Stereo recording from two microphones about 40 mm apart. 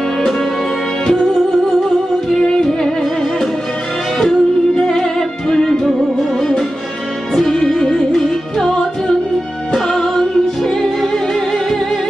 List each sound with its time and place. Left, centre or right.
2.3 s music: centre
4.2 s music: centre
7.3 s music: centre